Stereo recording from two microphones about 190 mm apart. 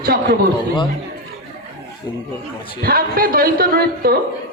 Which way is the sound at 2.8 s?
50° right (ahead or behind).